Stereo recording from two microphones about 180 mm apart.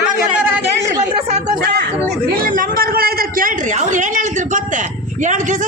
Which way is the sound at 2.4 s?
50° right (ahead or behind).